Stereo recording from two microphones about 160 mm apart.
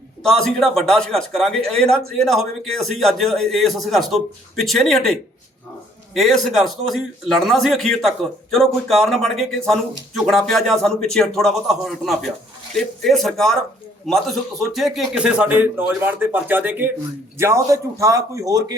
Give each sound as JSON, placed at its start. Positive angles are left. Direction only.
{"t": 0.2, "sound": "a man's voice", "side_deg": 5}
{"t": 6.1, "sound": "a man's voice", "side_deg": 0}